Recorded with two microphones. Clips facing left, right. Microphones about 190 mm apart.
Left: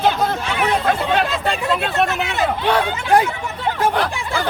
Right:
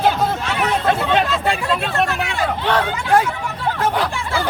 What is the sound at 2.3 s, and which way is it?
Speech, 15° left (ahead or behind).